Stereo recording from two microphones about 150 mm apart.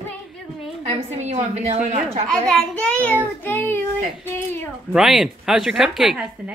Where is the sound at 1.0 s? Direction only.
45° right (ahead or behind).